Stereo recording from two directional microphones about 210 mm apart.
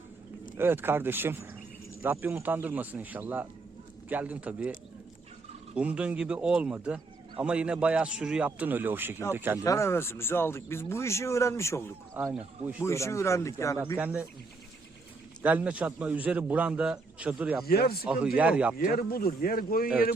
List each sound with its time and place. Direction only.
0.5 s a man's voice: 10° right (ahead or behind)
5.7 s a man's voice: 5° right (ahead or behind)
9.6 s speech: 15° left (ahead or behind)
12.8 s speech: 15° left (ahead or behind)
13.9 s a man's voice: 5° right (ahead or behind)
15.4 s a man's voice: 5° right (ahead or behind)
17.7 s speech: 45° left (ahead or behind)
18.0 s a man's voice: 5° right (ahead or behind)
18.8 s speech: 45° left (ahead or behind)